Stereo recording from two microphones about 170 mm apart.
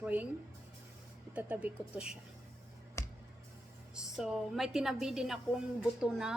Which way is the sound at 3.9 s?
Centre (ahead or behind).